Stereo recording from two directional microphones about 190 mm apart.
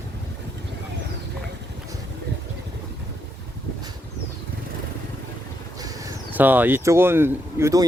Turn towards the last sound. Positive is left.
turn(degrees=-15)  # may be behind; listen again after turning